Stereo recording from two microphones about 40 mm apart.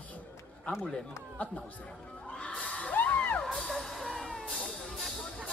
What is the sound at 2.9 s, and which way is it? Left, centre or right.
Music, left.